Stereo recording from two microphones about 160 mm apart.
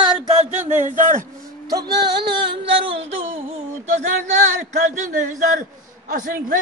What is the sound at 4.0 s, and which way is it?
A man's voice, 45° right (ahead or behind).